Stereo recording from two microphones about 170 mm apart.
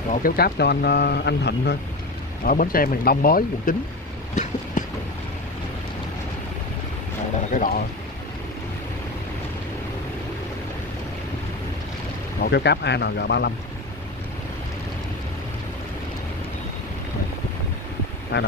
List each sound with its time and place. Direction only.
0.1 s speech: 60° left (ahead or behind); by 1.8 s 85° left
2.4 s speech: 55° left (ahead or behind)
4.8 s boat: 50° left (ahead or behind)
7.5 s speech: 55° left (ahead or behind)
12.4 s speech: 75° left (ahead or behind)
18.3 s speech: 75° left (ahead or behind)